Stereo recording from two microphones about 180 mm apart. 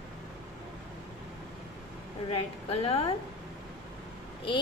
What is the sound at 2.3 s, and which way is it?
Speech, 35° left (ahead or behind).